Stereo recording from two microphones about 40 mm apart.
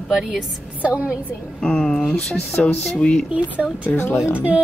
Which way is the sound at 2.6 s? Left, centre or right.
Left.